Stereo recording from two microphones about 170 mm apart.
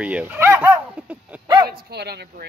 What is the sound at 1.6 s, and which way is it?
Speech, 70° right (ahead or behind).